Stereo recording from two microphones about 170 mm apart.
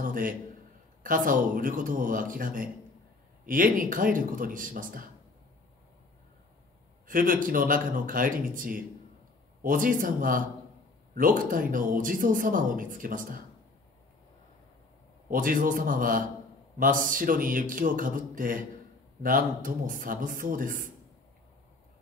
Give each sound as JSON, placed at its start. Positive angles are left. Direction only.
{"t": 0.0, "sound": "a sound", "side_deg": -55}
{"t": 1.0, "sound": "speech", "side_deg": -55}
{"t": 7.1, "sound": "speech", "side_deg": -55}
{"t": 15.2, "sound": "speech", "side_deg": -55}